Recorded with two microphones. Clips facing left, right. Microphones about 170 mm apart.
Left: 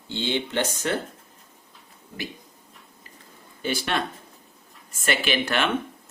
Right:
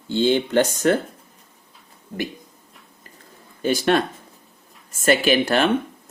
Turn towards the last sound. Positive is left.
turn(degrees=-40)  # may be behind; listen again after turning